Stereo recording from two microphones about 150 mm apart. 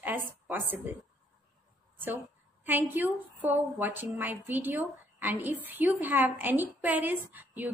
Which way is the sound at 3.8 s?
15° right (ahead or behind).